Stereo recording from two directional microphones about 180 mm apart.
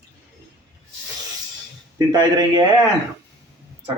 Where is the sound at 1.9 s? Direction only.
25° right (ahead or behind).